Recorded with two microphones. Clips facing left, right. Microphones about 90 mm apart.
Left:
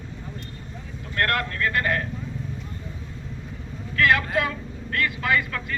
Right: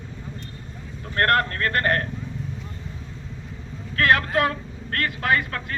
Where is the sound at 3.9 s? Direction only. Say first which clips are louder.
Right 1 dB; 50° right (ahead or behind).